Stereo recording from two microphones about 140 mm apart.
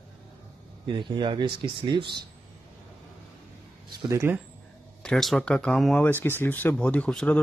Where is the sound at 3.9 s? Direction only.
25° right (ahead or behind).